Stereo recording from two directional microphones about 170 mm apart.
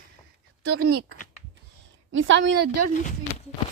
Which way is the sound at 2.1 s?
90° right.